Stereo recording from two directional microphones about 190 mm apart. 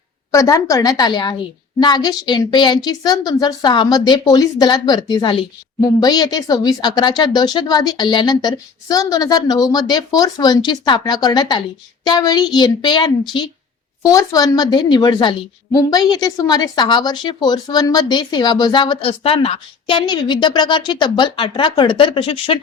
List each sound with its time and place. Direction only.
0.3 s a woman's voice: 15° left (ahead or behind)